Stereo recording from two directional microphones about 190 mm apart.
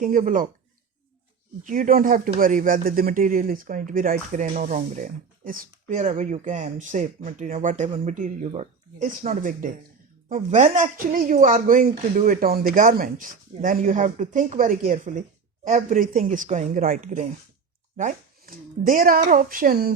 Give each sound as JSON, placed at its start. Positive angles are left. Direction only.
{"t": 0.0, "sound": "speech", "side_deg": -45}
{"t": 1.6, "sound": "speech", "side_deg": -45}